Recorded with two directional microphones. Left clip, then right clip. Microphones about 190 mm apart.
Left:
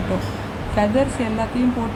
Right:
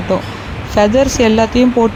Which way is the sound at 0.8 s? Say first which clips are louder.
Right 9 dB; 45° right (ahead or behind).